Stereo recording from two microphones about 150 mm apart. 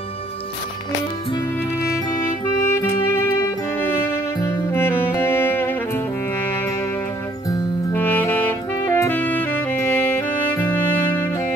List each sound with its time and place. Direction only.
2.7 s music: 15° left (ahead or behind)
7.9 s saxophone: 10° left (ahead or behind)